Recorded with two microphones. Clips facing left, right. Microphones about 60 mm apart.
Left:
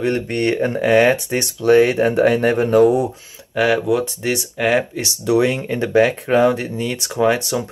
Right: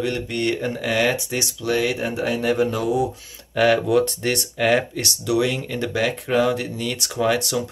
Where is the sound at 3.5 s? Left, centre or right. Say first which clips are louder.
Even; centre.